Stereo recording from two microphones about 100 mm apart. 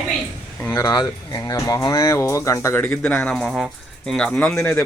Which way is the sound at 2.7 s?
20° left (ahead or behind).